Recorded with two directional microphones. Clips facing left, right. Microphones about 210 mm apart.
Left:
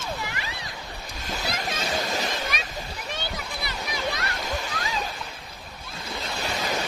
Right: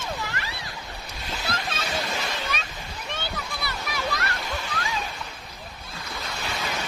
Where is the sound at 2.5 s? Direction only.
10° left (ahead or behind).